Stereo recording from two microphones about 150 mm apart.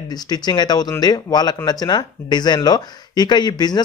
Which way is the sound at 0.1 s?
30° left (ahead or behind).